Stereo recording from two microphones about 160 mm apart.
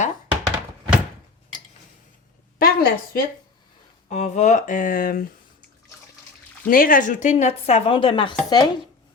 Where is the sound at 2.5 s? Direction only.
65° left (ahead or behind).